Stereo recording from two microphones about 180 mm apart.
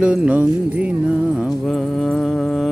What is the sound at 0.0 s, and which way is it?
Speech, 5° right (ahead or behind).